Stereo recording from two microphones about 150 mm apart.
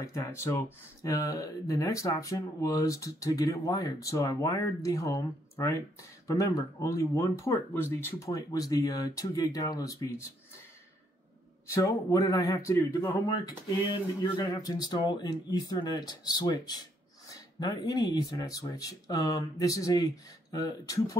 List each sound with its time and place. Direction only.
0.0 s speech: 20° left (ahead or behind)
11.6 s speech: 20° left (ahead or behind)
14.2 s speech: 30° left (ahead or behind)